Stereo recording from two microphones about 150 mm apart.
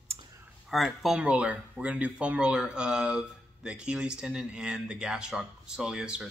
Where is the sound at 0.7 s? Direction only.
Centre (ahead or behind).